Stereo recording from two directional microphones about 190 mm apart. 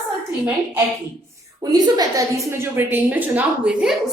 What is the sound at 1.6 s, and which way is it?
A woman's voice, 20° right (ahead or behind).